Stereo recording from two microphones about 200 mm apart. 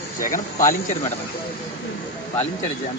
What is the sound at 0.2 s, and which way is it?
Speech, 40° left (ahead or behind).